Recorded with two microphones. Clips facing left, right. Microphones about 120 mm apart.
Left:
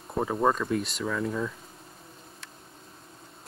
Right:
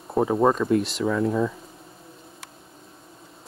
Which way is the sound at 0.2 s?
10° right (ahead or behind).